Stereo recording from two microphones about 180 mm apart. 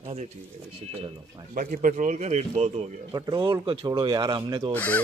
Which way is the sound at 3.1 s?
25° right (ahead or behind).